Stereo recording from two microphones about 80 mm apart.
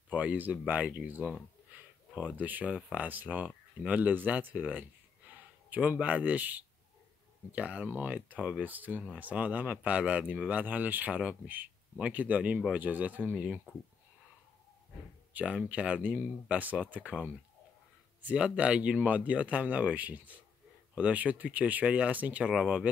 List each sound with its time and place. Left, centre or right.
0.1 s speech: centre
15.3 s speech: centre
18.2 s speech: centre